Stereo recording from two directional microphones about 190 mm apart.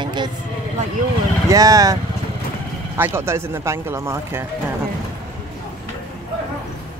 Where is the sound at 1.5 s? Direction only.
20° right (ahead or behind).